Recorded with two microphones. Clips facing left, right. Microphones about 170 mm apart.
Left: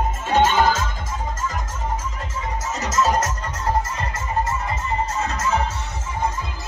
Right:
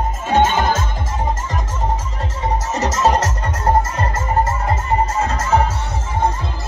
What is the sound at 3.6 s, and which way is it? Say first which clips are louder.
Music: right 6 dB; 50° right (ahead or behind).